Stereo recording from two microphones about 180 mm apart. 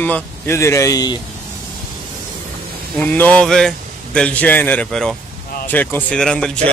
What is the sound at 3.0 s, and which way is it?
Speech, 10° left (ahead or behind).